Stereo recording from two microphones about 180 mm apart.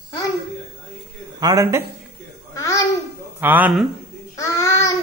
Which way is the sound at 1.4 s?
20° right (ahead or behind).